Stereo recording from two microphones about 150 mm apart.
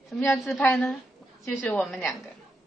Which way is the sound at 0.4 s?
5° left (ahead or behind).